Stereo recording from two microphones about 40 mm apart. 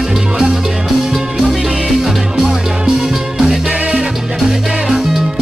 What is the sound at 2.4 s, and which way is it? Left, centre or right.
Music, centre.